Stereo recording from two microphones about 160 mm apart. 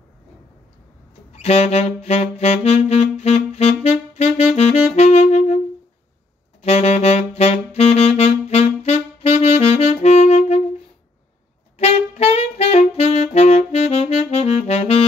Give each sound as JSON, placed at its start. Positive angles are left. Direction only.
{"t": 1.3, "sound": "saxophone", "side_deg": 40}
{"t": 6.6, "sound": "saxophone", "side_deg": 40}
{"t": 11.8, "sound": "saxophone", "side_deg": 40}